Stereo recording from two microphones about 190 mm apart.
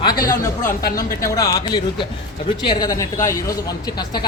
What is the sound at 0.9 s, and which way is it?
A woman's voice, 15° left (ahead or behind).